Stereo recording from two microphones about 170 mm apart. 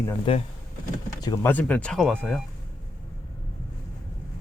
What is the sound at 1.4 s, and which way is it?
Speech, 10° left (ahead or behind).